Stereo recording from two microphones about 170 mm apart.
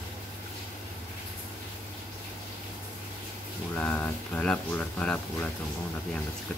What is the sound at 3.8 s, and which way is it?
Speech, 10° left (ahead or behind).